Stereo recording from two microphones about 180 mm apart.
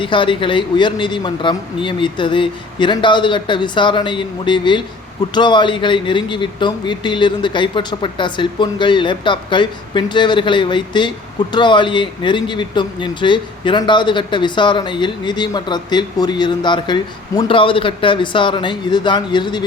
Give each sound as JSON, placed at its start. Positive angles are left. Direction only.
{"t": 0.0, "sound": "speech", "side_deg": 30}